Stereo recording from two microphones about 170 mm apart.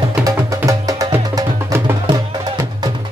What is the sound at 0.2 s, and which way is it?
Music, 20° right (ahead or behind).